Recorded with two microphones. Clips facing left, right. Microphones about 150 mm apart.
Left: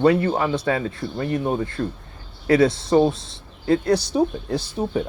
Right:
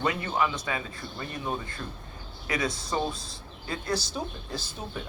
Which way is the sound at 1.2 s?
55° left (ahead or behind).